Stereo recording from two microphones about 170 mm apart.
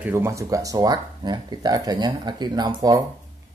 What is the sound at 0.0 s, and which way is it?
Speech, 10° right (ahead or behind).